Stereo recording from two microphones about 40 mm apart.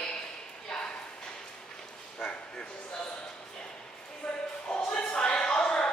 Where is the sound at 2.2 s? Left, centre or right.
Centre.